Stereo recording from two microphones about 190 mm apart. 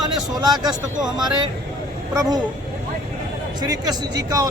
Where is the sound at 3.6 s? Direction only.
20° right (ahead or behind).